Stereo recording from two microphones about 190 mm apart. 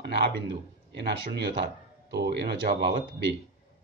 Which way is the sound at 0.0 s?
60° right (ahead or behind).